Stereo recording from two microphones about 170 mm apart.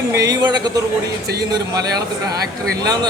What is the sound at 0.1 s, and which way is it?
A man's voice, 20° right (ahead or behind).